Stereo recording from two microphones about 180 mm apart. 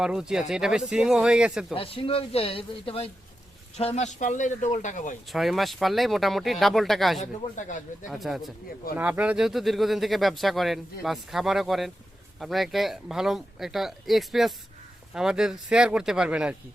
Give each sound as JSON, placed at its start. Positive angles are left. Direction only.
{"t": 0.0, "sound": "speech", "side_deg": -5}
{"t": 1.7, "sound": "speech", "side_deg": 30}
{"t": 5.3, "sound": "speech", "side_deg": 0}
{"t": 7.2, "sound": "speech", "side_deg": 45}
{"t": 8.1, "sound": "speech", "side_deg": 0}